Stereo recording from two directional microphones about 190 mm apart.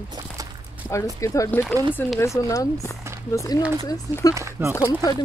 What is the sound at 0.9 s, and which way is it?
Speech, 15° left (ahead or behind).